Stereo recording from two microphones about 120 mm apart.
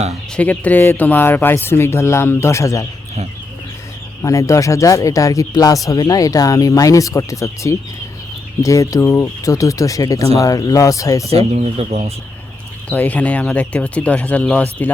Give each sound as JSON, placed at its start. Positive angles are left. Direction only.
{"t": 0.1, "sound": "speech", "side_deg": 10}
{"t": 4.2, "sound": "speech", "side_deg": 25}
{"t": 11.3, "sound": "speech", "side_deg": -60}
{"t": 12.9, "sound": "speech", "side_deg": 15}